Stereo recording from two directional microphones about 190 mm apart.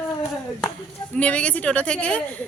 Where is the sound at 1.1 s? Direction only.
5° left (ahead or behind).